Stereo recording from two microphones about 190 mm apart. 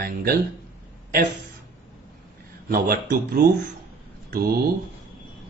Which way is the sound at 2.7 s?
50° right (ahead or behind).